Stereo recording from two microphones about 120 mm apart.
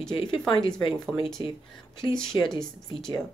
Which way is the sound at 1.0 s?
5° left (ahead or behind).